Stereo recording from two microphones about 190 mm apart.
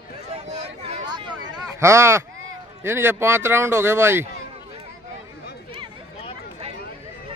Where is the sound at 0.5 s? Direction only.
35° right (ahead or behind).